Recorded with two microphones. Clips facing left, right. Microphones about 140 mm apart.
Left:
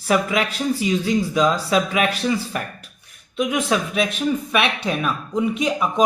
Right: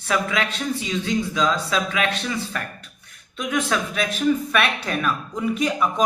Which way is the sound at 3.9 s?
5° left (ahead or behind).